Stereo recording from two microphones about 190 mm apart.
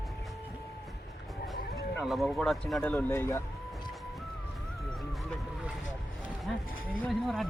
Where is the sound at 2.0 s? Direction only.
Centre (ahead or behind).